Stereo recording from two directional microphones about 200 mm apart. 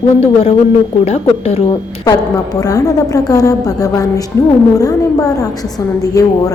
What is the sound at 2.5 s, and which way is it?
A woman's voice, 15° left (ahead or behind).